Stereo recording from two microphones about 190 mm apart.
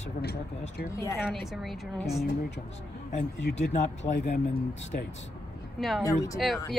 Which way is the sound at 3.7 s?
40° left (ahead or behind).